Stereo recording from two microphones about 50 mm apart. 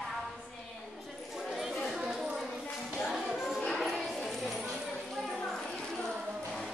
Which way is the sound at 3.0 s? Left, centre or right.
Centre.